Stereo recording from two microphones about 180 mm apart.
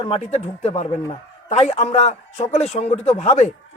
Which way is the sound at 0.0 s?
35° left (ahead or behind).